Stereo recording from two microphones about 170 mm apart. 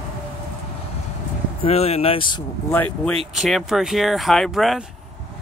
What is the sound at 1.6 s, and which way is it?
Speech, 35° left (ahead or behind).